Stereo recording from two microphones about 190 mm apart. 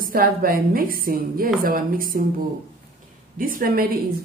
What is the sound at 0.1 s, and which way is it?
Speech, 50° right (ahead or behind).